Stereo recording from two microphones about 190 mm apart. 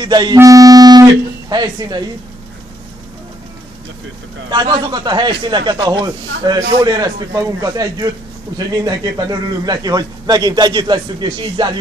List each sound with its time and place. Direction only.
0.0 s a man's voice: 20° right (ahead or behind)
4.5 s a man's voice: 25° right (ahead or behind)